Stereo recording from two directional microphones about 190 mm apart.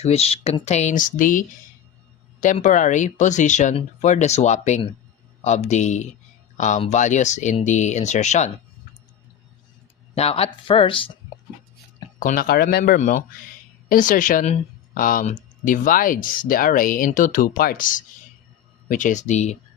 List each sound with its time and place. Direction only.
0.0 s speech: 35° left (ahead or behind)
10.2 s speech: 30° left (ahead or behind)
12.2 s a woman's voice: 50° left (ahead or behind)